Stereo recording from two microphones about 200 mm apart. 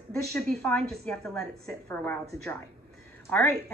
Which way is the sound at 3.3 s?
5° left (ahead or behind).